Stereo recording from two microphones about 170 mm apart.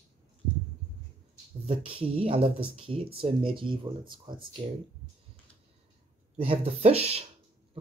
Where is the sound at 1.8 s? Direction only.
35° right (ahead or behind).